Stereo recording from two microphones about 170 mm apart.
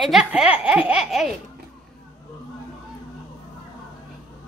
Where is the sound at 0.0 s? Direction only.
5° right (ahead or behind).